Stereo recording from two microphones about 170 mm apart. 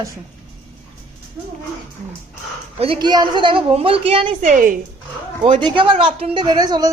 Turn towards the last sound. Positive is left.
turn(degrees=-25)  # may be behind; listen again after turning